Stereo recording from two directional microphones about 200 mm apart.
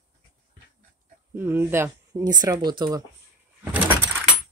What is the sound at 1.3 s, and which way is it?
Speech, 10° right (ahead or behind).